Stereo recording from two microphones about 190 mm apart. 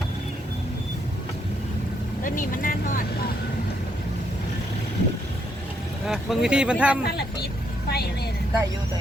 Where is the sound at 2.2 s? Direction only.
45° left (ahead or behind).